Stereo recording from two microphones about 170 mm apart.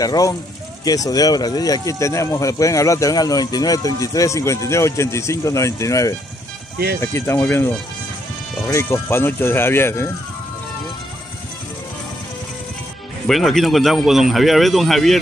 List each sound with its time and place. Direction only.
0.0 s speech: 20° left (ahead or behind)
13.3 s speech: centre (ahead or behind)